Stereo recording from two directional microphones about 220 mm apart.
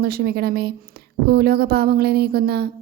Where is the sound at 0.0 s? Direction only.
45° right (ahead or behind).